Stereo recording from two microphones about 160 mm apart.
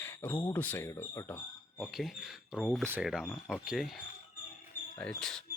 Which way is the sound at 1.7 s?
Centre (ahead or behind).